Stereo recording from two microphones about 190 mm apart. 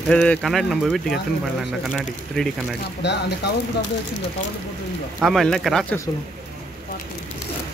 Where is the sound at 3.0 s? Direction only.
65° left (ahead or behind).